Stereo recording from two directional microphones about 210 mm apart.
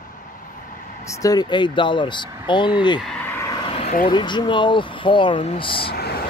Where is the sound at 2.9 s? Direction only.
5° left (ahead or behind); by 4.0 s 30° left (ahead or behind).